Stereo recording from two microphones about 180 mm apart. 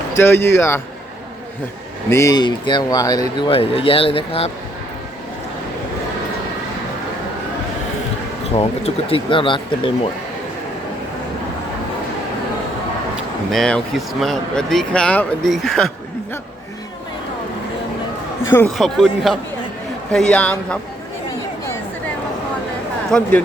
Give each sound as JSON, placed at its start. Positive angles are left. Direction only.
{"t": 0.2, "sound": "speech", "side_deg": 15}
{"t": 2.0, "sound": "speech", "side_deg": 15}
{"t": 8.5, "sound": "speech", "side_deg": 35}
{"t": 13.5, "sound": "speech", "side_deg": 5}
{"t": 18.8, "sound": "speech", "side_deg": 0}
{"t": 23.1, "sound": "speech", "side_deg": 5}